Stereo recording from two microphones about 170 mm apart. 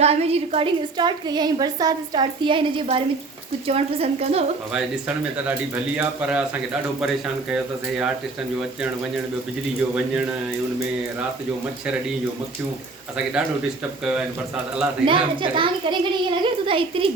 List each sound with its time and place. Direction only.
0.0 s a woman's voice: 40° right (ahead or behind)
4.7 s speech: 5° right (ahead or behind)
14.0 s speech: 5° right (ahead or behind)
15.0 s a woman's voice: 30° right (ahead or behind)